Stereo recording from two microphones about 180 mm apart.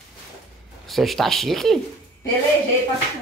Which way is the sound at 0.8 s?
Centre (ahead or behind).